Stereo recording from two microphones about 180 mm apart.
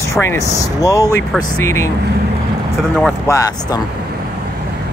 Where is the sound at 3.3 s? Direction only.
20° left (ahead or behind).